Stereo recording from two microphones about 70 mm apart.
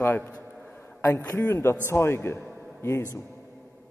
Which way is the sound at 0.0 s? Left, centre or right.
Left.